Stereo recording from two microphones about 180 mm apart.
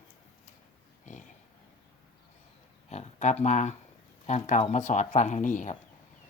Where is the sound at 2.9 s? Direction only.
40° left (ahead or behind).